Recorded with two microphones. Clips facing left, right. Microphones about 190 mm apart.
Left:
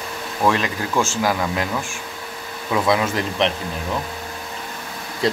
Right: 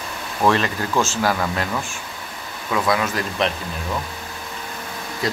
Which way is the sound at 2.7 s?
25° left (ahead or behind).